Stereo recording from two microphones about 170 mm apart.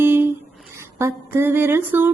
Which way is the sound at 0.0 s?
15° right (ahead or behind).